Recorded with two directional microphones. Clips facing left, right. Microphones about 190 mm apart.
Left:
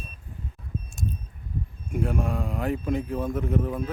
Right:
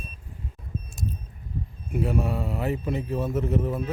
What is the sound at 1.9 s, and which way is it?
A man's voice, 5° right (ahead or behind).